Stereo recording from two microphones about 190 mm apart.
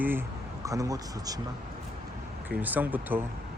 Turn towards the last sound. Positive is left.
turn(degrees=-10)  # may be behind; listen again after turning